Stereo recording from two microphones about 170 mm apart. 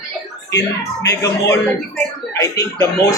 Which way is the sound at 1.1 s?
20° left (ahead or behind).